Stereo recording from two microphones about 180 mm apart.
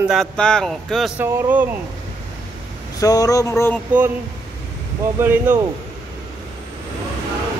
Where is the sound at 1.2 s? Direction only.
10° right (ahead or behind).